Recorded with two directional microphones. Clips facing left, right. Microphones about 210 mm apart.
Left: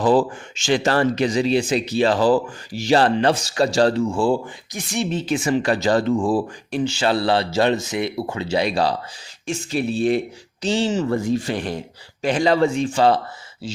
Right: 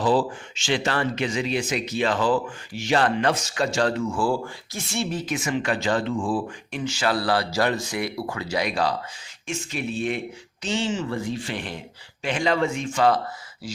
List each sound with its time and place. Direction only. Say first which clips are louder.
0.0 s speech: left 4 dB; 45° left (ahead or behind); by 13.8 s 25° left (ahead or behind)